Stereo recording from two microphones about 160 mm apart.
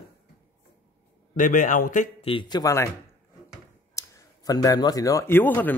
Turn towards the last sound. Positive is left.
turn(degrees=10)  # may be behind; listen again after turning